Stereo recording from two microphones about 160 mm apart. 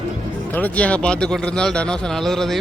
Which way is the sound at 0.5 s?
10° left (ahead or behind).